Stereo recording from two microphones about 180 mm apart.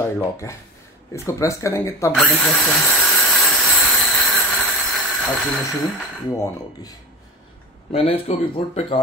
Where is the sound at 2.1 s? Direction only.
Centre (ahead or behind).